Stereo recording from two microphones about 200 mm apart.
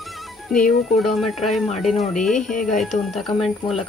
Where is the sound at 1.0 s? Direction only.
Centre (ahead or behind).